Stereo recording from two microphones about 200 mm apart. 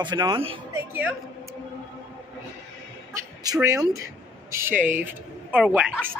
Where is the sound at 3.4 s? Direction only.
15° right (ahead or behind).